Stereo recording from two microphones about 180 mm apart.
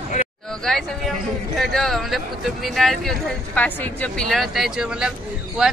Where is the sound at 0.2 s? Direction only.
40° left (ahead or behind).